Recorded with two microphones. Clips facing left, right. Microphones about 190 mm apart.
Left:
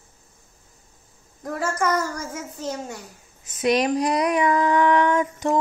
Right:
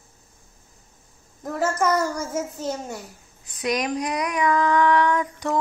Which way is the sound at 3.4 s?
25° left (ahead or behind).